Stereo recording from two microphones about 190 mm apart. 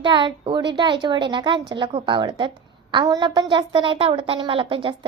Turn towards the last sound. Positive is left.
turn(degrees=-25)  # may be behind; listen again after turning